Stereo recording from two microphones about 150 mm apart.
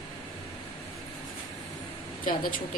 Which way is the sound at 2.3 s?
65° left (ahead or behind).